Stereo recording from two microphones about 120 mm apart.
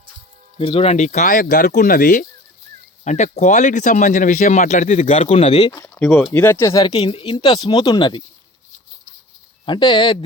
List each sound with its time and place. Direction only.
0.6 s speech: 50° left (ahead or behind); by 2.2 s 90° left
3.0 s speech: 75° left (ahead or behind); by 5.7 s 60° left (ahead or behind)
5.8 s speech: 15° left (ahead or behind)
6.8 s speech: 50° left (ahead or behind)
9.6 s speech: 40° left (ahead or behind)